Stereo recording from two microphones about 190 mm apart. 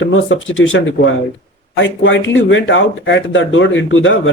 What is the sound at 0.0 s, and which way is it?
Speech, 85° left.